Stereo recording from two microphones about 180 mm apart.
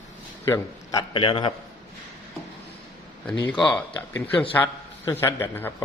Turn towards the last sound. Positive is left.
turn(degrees=10)  # may be behind; listen again after turning